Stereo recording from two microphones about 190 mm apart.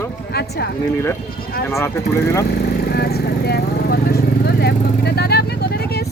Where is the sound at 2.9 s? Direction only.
55° left (ahead or behind).